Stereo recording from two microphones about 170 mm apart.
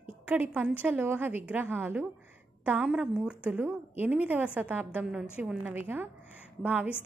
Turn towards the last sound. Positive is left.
turn(degrees=-10)  # may be behind; listen again after turning